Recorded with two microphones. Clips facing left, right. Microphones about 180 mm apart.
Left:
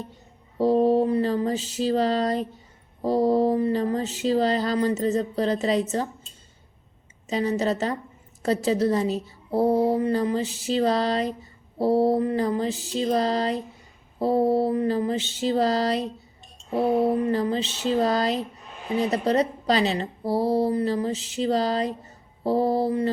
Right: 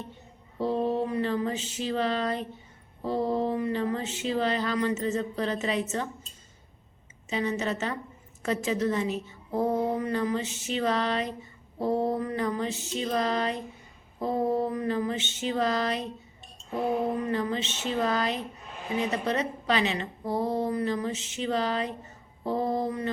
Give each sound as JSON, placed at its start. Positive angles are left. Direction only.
{"t": 0.6, "sound": "a woman's voice", "side_deg": 40}
{"t": 7.3, "sound": "a woman's voice", "side_deg": 35}